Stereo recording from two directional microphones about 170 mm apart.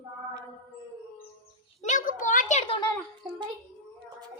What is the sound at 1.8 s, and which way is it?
Speech, 50° left (ahead or behind).